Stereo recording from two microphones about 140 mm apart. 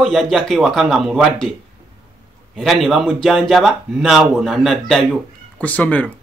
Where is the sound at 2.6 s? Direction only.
Centre (ahead or behind).